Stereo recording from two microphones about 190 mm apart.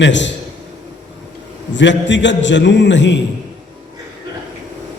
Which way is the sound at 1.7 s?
70° left (ahead or behind).